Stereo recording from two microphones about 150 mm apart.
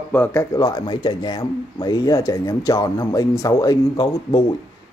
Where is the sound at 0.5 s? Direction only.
25° left (ahead or behind).